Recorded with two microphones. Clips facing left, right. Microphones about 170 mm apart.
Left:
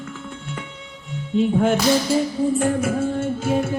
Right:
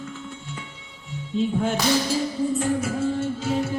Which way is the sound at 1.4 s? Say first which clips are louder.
Left 5 dB; 60° left (ahead or behind).